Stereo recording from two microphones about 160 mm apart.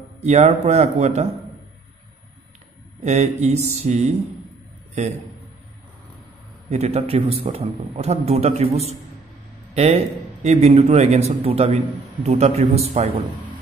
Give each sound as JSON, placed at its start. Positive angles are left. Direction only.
{"t": 0.2, "sound": "a man's voice", "side_deg": -45}
{"t": 3.0, "sound": "a man's voice", "side_deg": -45}
{"t": 6.7, "sound": "a man's voice", "side_deg": -40}
{"t": 9.8, "sound": "a man's voice", "side_deg": -40}